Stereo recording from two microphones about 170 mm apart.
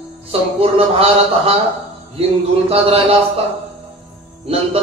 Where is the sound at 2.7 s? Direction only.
35° right (ahead or behind).